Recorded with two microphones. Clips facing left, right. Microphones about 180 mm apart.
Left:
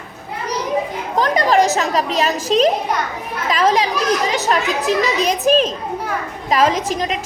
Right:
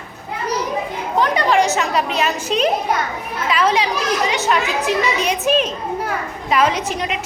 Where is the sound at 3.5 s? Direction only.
40° left (ahead or behind).